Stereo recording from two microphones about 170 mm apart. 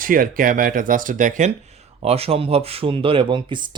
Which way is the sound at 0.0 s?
55° right (ahead or behind).